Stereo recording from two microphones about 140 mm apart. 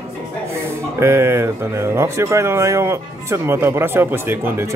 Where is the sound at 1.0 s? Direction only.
20° right (ahead or behind).